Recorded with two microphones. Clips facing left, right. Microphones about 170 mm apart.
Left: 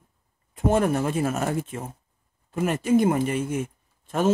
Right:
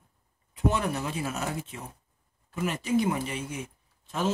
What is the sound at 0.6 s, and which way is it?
Speech, 50° left (ahead or behind).